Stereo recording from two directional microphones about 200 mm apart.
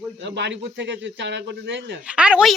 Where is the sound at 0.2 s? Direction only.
60° right (ahead or behind).